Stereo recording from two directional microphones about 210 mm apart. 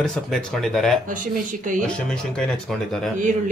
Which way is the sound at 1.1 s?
40° right (ahead or behind).